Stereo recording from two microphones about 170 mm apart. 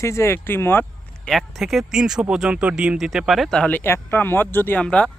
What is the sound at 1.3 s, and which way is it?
Speech, centre (ahead or behind).